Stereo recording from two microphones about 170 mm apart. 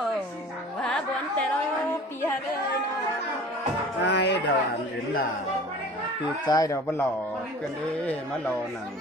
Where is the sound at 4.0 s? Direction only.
90° left.